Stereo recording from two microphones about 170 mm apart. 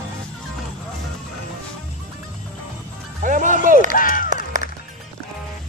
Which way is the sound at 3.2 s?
50° right (ahead or behind).